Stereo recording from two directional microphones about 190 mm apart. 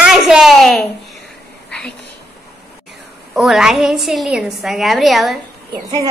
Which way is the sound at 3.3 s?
Centre (ahead or behind).